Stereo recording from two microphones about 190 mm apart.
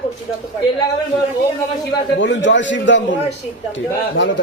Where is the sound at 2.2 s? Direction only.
75° left (ahead or behind).